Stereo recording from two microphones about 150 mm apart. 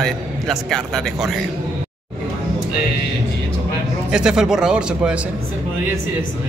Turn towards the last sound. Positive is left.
turn(degrees=-5)  # may be behind; listen again after turning